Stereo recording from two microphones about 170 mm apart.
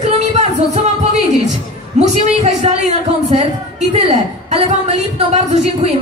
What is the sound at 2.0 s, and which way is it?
Speech, 35° right (ahead or behind).